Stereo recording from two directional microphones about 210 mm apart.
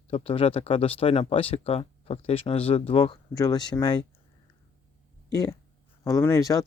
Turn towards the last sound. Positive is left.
turn(degrees=15)  # may be behind; listen again after turning